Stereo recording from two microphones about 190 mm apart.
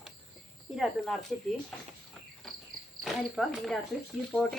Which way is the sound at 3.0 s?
Centre (ahead or behind).